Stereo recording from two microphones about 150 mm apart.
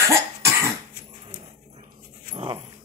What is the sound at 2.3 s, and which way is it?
Dog, 35° right (ahead or behind).